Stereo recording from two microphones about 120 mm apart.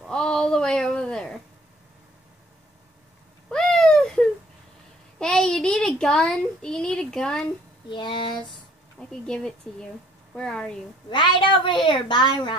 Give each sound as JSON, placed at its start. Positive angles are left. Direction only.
{"t": 0.0, "sound": "a sound", "side_deg": 5}
{"t": 3.4, "sound": "a sound", "side_deg": 5}
{"t": 5.2, "sound": "a child's voice", "side_deg": 5}
{"t": 7.9, "sound": "a woman's voice", "side_deg": 40}
{"t": 9.2, "sound": "speech", "side_deg": 5}
{"t": 11.1, "sound": "a woman's voice", "side_deg": 40}